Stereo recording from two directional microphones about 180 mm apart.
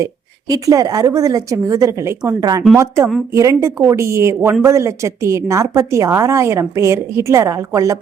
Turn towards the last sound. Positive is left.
turn(degrees=-20)  # may be behind; listen again after turning